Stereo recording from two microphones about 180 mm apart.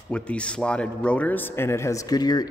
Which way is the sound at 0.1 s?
5° left (ahead or behind).